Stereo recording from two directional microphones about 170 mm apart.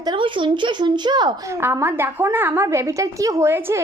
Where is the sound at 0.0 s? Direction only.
25° right (ahead or behind).